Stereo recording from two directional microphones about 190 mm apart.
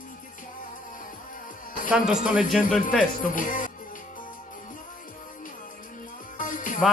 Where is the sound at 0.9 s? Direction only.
45° left (ahead or behind).